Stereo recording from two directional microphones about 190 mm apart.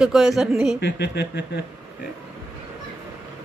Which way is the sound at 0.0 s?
Centre (ahead or behind).